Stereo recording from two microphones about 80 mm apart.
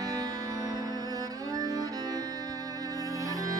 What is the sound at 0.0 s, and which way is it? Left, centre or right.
Music, right.